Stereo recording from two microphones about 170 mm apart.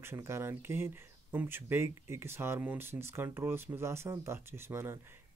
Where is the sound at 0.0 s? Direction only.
15° right (ahead or behind).